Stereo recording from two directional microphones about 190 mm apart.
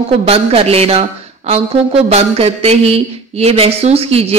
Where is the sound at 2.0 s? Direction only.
30° right (ahead or behind).